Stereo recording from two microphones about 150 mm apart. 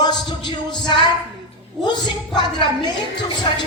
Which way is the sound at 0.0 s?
30° left (ahead or behind).